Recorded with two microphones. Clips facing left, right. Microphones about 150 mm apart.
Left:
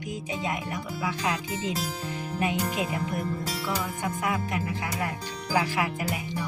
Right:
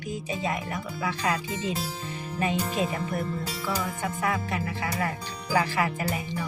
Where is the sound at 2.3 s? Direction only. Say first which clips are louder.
Right 1 dB; 15° left (ahead or behind).